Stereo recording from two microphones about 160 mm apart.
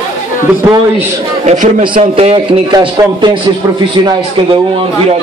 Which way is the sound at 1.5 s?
45° right (ahead or behind).